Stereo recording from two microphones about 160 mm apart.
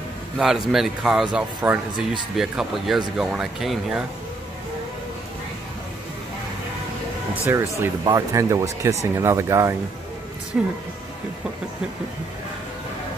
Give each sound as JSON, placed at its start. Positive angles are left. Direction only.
{"t": 0.4, "sound": "a man's voice", "side_deg": 0}
{"t": 7.4, "sound": "speech", "side_deg": -15}